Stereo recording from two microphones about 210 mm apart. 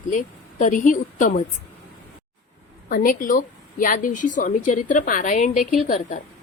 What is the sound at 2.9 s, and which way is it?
A woman's voice, 40° left (ahead or behind).